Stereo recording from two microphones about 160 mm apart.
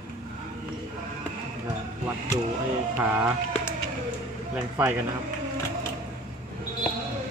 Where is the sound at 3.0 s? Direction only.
10° right (ahead or behind).